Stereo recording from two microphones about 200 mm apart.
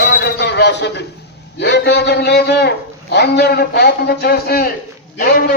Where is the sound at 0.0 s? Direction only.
50° left (ahead or behind).